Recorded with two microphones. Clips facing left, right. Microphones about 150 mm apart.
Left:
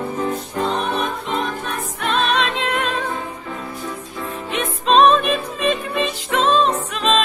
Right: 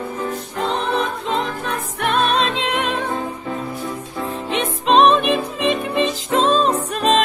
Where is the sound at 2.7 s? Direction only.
15° right (ahead or behind).